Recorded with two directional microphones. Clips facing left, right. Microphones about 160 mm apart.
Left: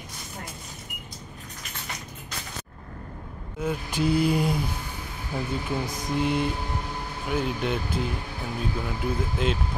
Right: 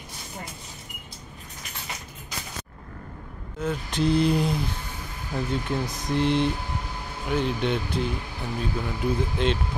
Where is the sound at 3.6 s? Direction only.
10° left (ahead or behind).